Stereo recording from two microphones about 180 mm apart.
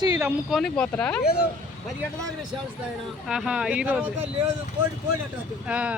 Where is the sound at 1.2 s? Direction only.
60° left (ahead or behind).